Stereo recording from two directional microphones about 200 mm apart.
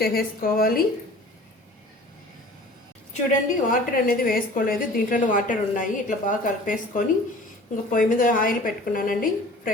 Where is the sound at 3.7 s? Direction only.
45° left (ahead or behind).